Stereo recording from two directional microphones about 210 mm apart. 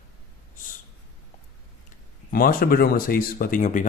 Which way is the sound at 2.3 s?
45° left (ahead or behind).